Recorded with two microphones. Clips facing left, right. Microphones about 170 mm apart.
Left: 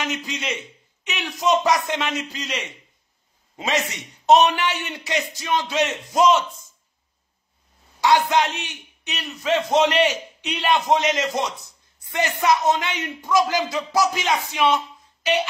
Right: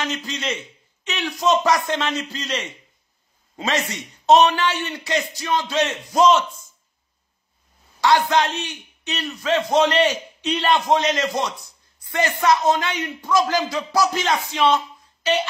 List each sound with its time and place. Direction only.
0.0 s a man's voice: 15° left (ahead or behind)
8.0 s a man's voice: 15° left (ahead or behind)